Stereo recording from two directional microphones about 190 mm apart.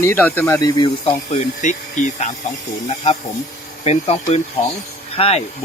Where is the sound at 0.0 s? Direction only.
10° left (ahead or behind).